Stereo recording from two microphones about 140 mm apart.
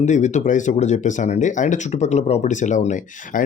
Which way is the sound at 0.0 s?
60° left (ahead or behind).